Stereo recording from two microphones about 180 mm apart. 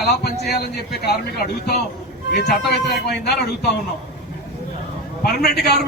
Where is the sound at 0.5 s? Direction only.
60° left (ahead or behind).